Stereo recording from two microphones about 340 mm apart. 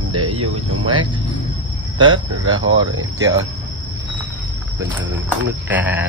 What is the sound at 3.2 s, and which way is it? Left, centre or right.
Speech, centre.